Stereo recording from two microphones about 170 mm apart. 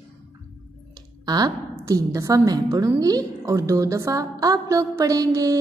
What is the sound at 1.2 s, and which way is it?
A woman's voice, 25° right (ahead or behind).